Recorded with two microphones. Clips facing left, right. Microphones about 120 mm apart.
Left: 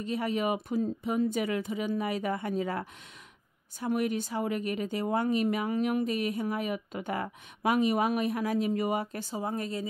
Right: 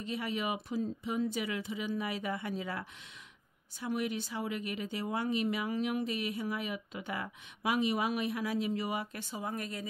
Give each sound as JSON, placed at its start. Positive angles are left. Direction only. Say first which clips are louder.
{"t": 0.0, "sound": "speech", "louder": "left 6 dB", "side_deg": 45}